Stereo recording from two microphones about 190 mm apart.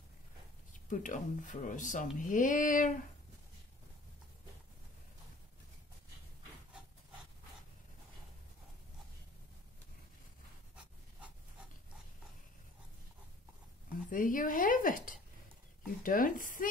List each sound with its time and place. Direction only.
0.8 s speech: 40° left (ahead or behind)
14.1 s a sound: 45° left (ahead or behind)
16.0 s speech: 45° left (ahead or behind)